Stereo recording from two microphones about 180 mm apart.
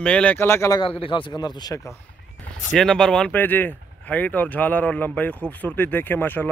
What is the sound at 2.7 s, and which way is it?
Speech, centre (ahead or behind).